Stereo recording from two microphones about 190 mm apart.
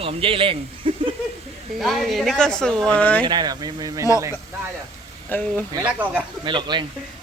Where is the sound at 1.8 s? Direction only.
Centre (ahead or behind).